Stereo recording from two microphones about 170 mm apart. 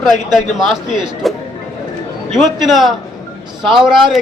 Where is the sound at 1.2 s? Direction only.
Centre (ahead or behind).